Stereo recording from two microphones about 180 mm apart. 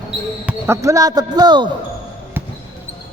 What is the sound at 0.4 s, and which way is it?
Speech, 15° right (ahead or behind).